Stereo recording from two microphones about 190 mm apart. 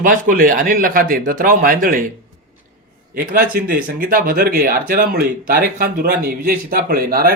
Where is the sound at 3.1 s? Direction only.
50° right (ahead or behind).